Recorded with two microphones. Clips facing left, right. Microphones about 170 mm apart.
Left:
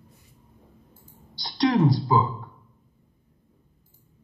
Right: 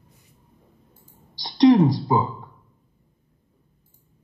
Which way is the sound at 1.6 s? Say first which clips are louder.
Right 6 dB; 20° right (ahead or behind).